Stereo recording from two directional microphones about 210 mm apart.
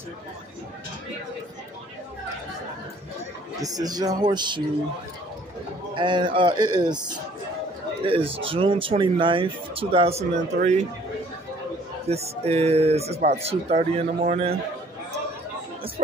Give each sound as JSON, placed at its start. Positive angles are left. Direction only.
{"t": 3.5, "sound": "speech", "side_deg": -15}
{"t": 5.9, "sound": "speech", "side_deg": -20}
{"t": 8.0, "sound": "speech", "side_deg": -25}
{"t": 12.1, "sound": "speech", "side_deg": -30}